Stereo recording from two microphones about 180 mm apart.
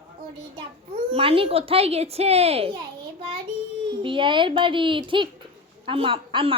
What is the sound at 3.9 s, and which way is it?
A woman's voice, 30° right (ahead or behind).